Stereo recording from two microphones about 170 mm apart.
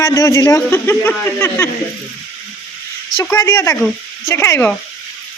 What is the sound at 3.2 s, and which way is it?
Speech, 15° left (ahead or behind).